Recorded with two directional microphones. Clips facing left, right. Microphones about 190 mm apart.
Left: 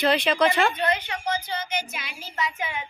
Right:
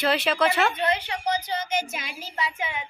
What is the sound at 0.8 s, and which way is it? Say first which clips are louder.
Speech: right 1 dB; 30° right (ahead or behind).